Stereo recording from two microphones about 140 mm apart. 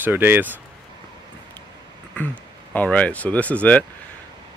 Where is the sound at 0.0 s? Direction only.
15° right (ahead or behind).